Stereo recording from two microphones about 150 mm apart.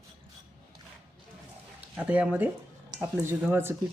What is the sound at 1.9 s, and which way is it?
Speech, 10° right (ahead or behind).